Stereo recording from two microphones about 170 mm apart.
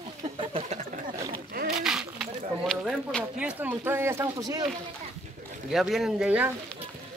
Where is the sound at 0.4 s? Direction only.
35° right (ahead or behind).